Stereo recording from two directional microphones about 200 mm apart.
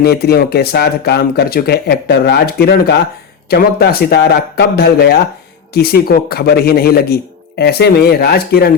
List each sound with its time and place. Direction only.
0.0 s speech: 50° left (ahead or behind)